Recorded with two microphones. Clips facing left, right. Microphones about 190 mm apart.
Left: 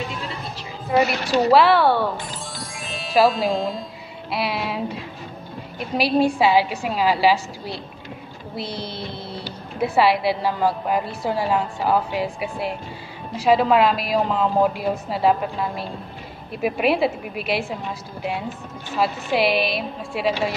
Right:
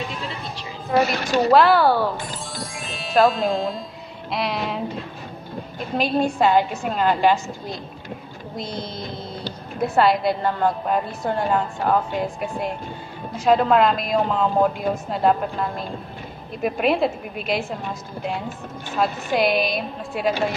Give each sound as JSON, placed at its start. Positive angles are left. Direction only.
{"t": 0.6, "sound": "a woman's voice", "side_deg": 5}
{"t": 2.5, "sound": "jingle", "side_deg": 0}
{"t": 4.3, "sound": "a woman's voice", "side_deg": 5}
{"t": 5.9, "sound": "a woman's voice", "side_deg": 10}
{"t": 8.6, "sound": "music", "side_deg": 30}
{"t": 9.8, "sound": "a woman's voice", "side_deg": 5}
{"t": 18.9, "sound": "a woman's voice", "side_deg": 5}